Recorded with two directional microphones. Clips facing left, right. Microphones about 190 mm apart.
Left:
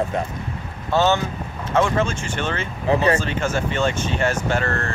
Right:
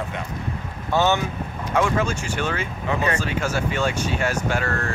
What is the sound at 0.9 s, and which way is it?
Speech, 15° right (ahead or behind).